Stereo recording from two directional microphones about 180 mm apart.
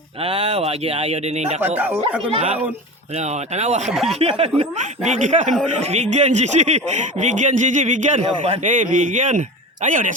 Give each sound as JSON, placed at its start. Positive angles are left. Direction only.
{"t": 0.2, "sound": "speech", "side_deg": -30}
{"t": 1.6, "sound": "speech", "side_deg": -10}
{"t": 2.3, "sound": "speech", "side_deg": -35}
{"t": 3.9, "sound": "speech", "side_deg": 0}
{"t": 4.2, "sound": "speech", "side_deg": -35}